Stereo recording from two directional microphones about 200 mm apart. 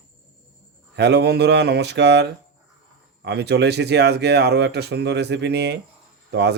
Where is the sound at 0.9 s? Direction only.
55° right (ahead or behind).